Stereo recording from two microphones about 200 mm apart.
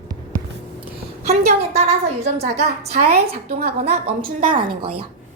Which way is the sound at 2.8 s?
50° right (ahead or behind).